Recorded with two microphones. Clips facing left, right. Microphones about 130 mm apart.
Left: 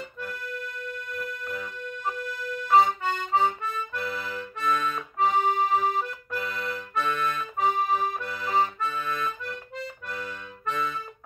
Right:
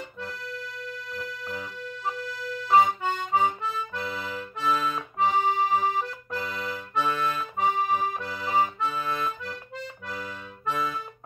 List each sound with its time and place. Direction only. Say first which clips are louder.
1.6 s music: left 1 dB; 5° right (ahead or behind)
2.7 s accordion: even; 10° right (ahead or behind)
8.8 s accordion: right 1 dB; 25° right (ahead or behind)
10.1 s accordion: even; 5° right (ahead or behind)